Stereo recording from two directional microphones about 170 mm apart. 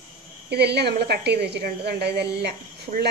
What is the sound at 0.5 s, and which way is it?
A woman's voice, 75° right (ahead or behind).